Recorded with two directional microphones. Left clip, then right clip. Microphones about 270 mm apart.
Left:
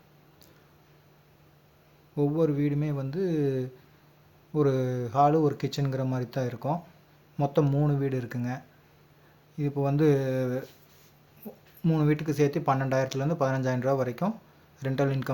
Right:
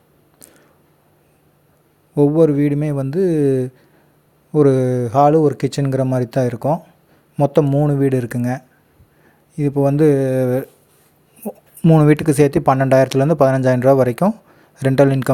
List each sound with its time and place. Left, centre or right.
2.1 s speech: right